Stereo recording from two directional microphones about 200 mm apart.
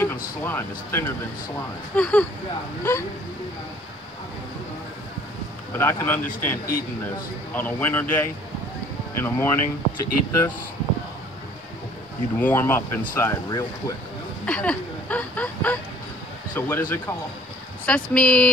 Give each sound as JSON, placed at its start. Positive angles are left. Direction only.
{"t": 0.0, "sound": "speech", "side_deg": 10}
{"t": 5.8, "sound": "speech", "side_deg": 10}
{"t": 12.4, "sound": "speech", "side_deg": 10}
{"t": 14.4, "sound": "speech", "side_deg": 5}
{"t": 17.8, "sound": "speech", "side_deg": 5}